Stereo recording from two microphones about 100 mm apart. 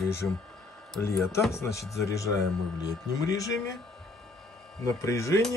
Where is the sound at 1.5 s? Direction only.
30° left (ahead or behind).